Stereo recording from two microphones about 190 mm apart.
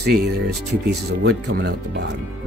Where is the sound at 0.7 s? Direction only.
60° right (ahead or behind).